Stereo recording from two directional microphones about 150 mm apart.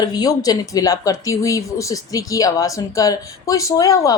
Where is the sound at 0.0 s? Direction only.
25° left (ahead or behind).